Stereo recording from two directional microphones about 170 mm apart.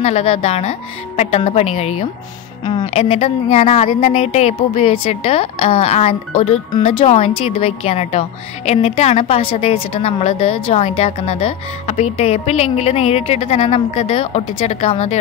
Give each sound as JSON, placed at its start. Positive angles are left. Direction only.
{"t": 0.0, "sound": "speech", "side_deg": 40}